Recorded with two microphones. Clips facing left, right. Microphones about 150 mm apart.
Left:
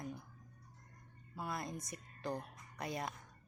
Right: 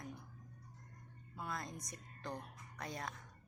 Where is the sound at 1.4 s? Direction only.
10° left (ahead or behind).